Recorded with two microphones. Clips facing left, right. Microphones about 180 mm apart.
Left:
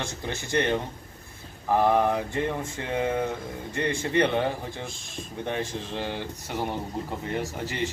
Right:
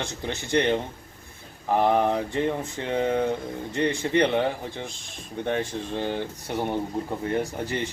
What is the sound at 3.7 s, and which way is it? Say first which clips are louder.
Speech: right 2 dB; 15° right (ahead or behind).